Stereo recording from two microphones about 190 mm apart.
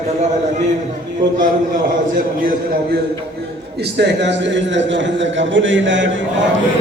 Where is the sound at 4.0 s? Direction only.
65° right (ahead or behind).